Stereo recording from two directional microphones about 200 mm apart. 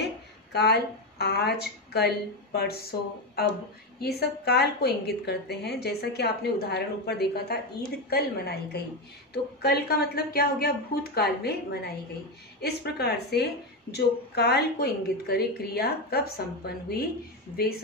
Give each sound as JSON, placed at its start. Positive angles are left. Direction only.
{"t": 0.0, "sound": "a woman's voice", "side_deg": 55}